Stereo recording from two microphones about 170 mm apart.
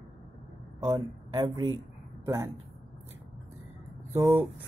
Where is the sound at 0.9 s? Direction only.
20° right (ahead or behind).